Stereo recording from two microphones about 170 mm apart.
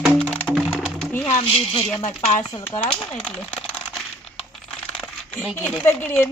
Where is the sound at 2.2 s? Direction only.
40° left (ahead or behind).